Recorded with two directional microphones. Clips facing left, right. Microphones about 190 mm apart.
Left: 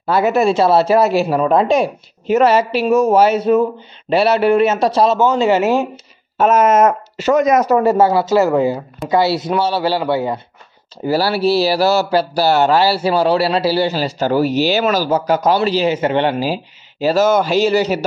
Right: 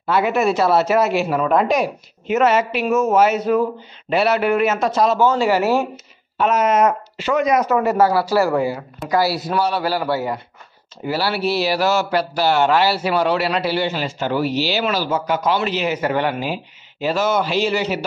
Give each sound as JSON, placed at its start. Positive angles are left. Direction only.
{"t": 0.0, "sound": "speech", "side_deg": 40}
{"t": 6.3, "sound": "speech", "side_deg": 45}
{"t": 7.9, "sound": "speech", "side_deg": 25}
{"t": 11.1, "sound": "speech", "side_deg": 40}